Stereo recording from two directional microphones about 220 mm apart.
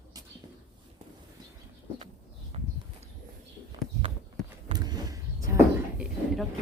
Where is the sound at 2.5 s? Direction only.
25° right (ahead or behind).